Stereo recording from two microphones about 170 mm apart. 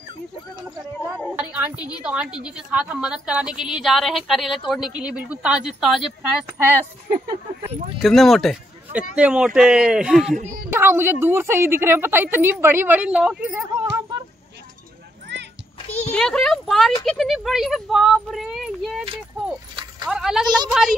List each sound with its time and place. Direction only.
1.0 s a woman's voice: 5° right (ahead or behind)
8.0 s speech: centre (ahead or behind)
10.7 s a woman's voice: 15° right (ahead or behind)
15.3 s music: 90° right
16.1 s speech: 5° left (ahead or behind)
20.1 s speech: 5° right (ahead or behind)
20.4 s a woman's voice: 25° right (ahead or behind)